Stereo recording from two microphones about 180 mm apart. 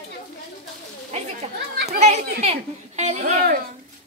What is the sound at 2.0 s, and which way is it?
Speech, 40° right (ahead or behind).